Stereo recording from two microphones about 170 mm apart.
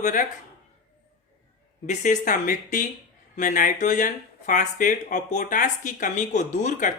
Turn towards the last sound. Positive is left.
turn(degrees=45)  # may be behind; listen again after turning